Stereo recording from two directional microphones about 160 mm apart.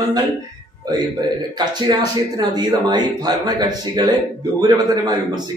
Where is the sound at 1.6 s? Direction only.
25° right (ahead or behind).